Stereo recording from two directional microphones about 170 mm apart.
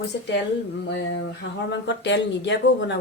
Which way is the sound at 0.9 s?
90° left.